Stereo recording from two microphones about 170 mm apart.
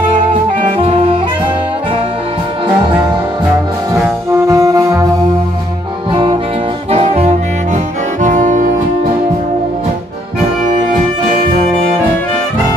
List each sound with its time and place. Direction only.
4.3 s saxophone: 15° right (ahead or behind)
6.9 s saxophone: 40° right (ahead or behind)